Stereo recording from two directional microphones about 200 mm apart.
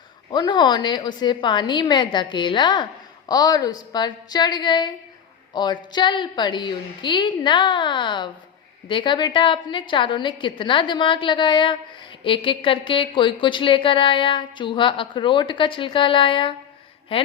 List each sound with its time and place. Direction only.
0.3 s a woman's voice: 20° left (ahead or behind)